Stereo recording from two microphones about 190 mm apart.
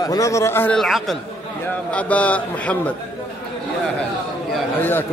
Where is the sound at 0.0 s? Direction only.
20° left (ahead or behind).